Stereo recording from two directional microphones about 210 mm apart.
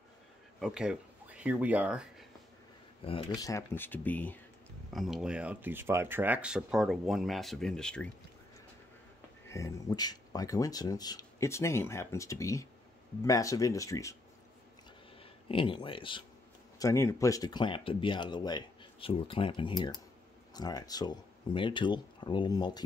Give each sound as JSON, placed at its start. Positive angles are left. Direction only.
{"t": 0.6, "sound": "speech", "side_deg": -5}
{"t": 3.1, "sound": "speech", "side_deg": 20}
{"t": 9.5, "sound": "speech", "side_deg": 15}
{"t": 15.4, "sound": "speech", "side_deg": 25}